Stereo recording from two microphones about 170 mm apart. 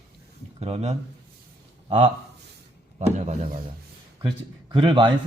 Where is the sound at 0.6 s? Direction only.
40° right (ahead or behind).